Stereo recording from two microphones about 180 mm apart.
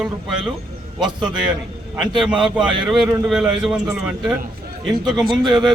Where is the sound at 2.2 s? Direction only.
5° right (ahead or behind).